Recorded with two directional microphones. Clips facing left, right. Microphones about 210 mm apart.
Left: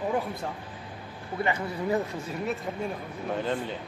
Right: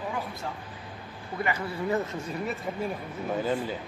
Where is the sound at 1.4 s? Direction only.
25° left (ahead or behind).